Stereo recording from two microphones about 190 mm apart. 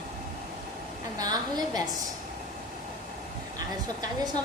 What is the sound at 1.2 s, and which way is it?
Speech, 20° right (ahead or behind).